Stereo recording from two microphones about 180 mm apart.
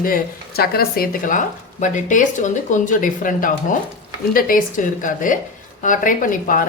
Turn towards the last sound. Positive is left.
turn(degrees=50)  # may be behind; listen again after turning